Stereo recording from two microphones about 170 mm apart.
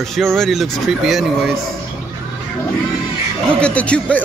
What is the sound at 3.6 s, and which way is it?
Speech, 5° left (ahead or behind).